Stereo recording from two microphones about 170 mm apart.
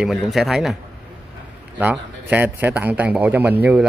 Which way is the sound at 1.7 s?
10° right (ahead or behind).